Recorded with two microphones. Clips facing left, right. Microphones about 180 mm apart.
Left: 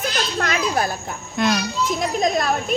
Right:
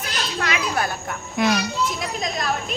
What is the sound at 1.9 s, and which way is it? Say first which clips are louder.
Speech: left 7 dB; 50° left (ahead or behind).